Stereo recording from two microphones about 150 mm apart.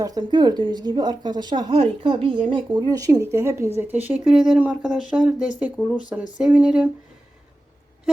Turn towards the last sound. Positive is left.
turn(degrees=-10)  # may be behind; listen again after turning